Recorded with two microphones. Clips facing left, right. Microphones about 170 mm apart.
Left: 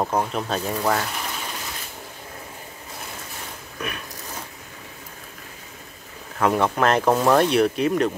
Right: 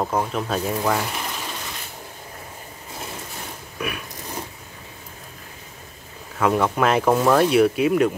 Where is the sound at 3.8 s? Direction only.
10° right (ahead or behind).